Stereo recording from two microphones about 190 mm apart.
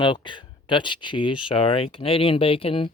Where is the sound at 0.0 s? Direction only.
25° left (ahead or behind).